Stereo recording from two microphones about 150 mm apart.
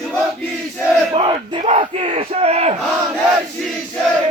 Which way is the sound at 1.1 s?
35° right (ahead or behind).